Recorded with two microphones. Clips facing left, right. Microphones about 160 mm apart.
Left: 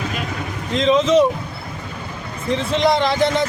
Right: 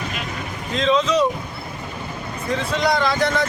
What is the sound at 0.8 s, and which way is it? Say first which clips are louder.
Speech: left 3 dB; 20° left (ahead or behind).